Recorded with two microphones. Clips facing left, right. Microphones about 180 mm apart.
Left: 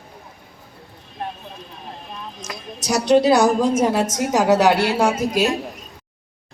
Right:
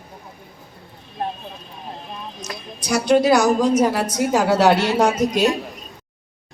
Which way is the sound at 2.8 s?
35° left (ahead or behind).